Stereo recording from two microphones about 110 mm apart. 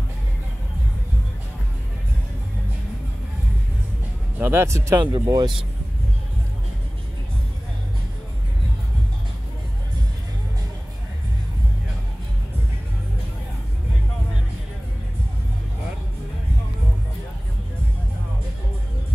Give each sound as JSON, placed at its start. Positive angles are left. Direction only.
{"t": 4.4, "sound": "speech", "side_deg": -20}